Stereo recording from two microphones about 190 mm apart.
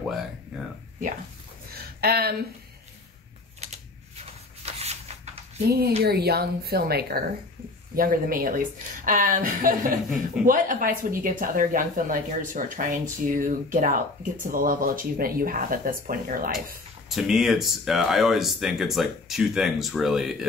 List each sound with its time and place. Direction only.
2.0 s speech: 55° right (ahead or behind)
3.6 s typing: 35° right (ahead or behind)
4.7 s a sound: 35° right (ahead or behind)
5.7 s a woman's voice: 55° right (ahead or behind)
17.1 s speech: centre (ahead or behind)